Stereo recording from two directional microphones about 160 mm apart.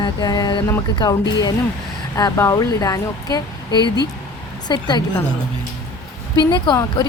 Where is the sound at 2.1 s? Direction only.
20° left (ahead or behind).